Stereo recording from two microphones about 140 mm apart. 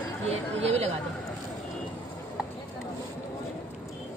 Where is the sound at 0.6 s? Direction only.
45° right (ahead or behind).